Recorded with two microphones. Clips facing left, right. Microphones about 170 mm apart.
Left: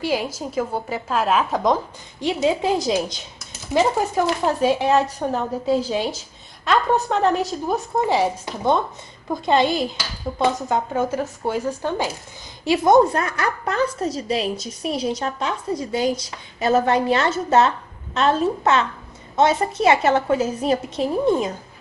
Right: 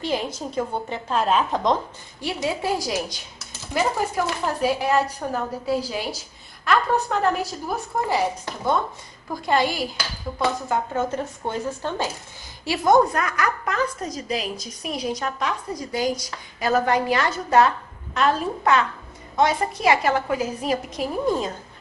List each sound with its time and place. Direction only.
0.0 s a woman's voice: 5° left (ahead or behind)
2.2 s a woman's voice: 20° left (ahead or behind)
3.7 s speech: 10° left (ahead or behind)
4.6 s a woman's voice: 25° left (ahead or behind)
9.3 s a woman's voice: 20° left (ahead or behind)